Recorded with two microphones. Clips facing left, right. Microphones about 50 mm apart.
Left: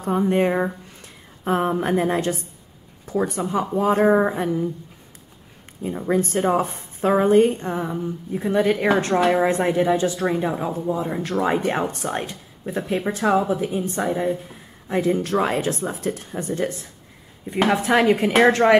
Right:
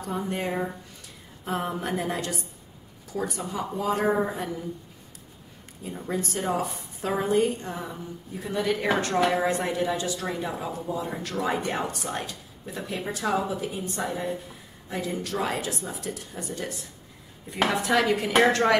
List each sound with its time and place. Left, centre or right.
0.0 s a woman's voice: left
5.9 s a woman's voice: left